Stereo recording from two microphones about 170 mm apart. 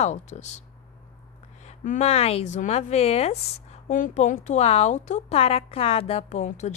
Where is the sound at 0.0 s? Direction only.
40° left (ahead or behind).